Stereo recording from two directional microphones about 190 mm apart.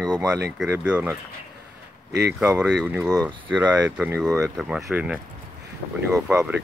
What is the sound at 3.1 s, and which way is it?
Speech, 20° right (ahead or behind).